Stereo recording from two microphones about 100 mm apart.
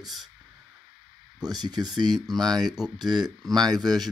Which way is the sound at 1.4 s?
40° right (ahead or behind).